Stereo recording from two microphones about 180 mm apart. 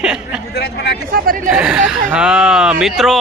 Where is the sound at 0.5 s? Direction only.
65° left (ahead or behind).